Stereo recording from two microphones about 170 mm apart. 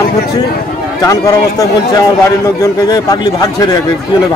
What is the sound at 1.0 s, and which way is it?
A man's voice, 20° left (ahead or behind).